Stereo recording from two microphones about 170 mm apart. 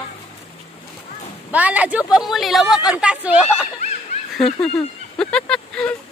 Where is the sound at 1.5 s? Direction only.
10° right (ahead or behind).